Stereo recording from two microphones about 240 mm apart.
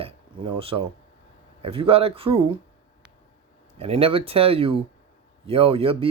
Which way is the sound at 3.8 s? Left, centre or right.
Right.